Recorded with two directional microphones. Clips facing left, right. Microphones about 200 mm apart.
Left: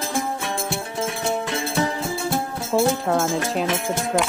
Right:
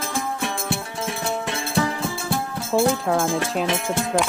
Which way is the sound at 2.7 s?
Centre (ahead or behind).